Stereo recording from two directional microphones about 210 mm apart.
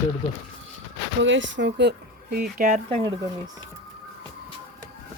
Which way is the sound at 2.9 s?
20° right (ahead or behind).